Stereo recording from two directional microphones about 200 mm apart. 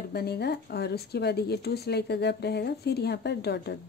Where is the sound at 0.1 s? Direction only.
55° left (ahead or behind).